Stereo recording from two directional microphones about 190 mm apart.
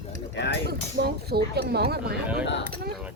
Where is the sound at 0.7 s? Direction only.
55° right (ahead or behind).